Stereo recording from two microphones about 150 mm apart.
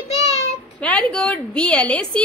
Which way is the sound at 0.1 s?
40° left (ahead or behind).